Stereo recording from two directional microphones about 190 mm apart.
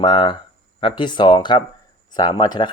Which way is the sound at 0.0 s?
25° left (ahead or behind).